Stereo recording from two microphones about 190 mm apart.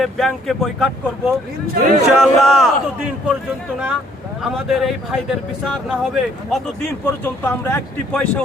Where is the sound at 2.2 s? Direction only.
Centre (ahead or behind).